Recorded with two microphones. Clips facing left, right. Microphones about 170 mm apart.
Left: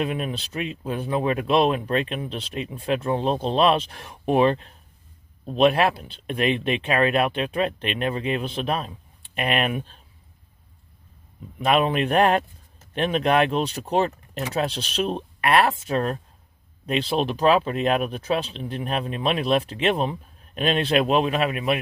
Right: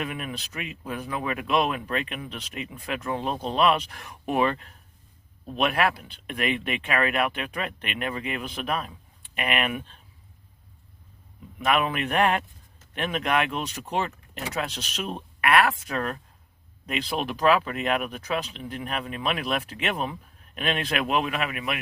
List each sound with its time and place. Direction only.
0.0 s speech: 30° left (ahead or behind)
11.6 s speech: 30° left (ahead or behind)